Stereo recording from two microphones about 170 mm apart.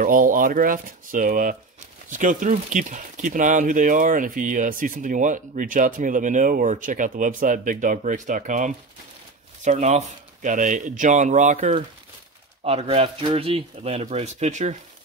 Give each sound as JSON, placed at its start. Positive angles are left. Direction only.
{"t": 0.0, "sound": "speech", "side_deg": -50}